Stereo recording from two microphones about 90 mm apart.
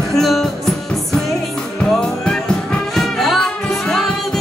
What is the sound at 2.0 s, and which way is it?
Music, 10° left (ahead or behind).